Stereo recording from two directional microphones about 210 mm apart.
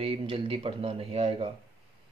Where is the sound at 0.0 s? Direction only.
25° right (ahead or behind).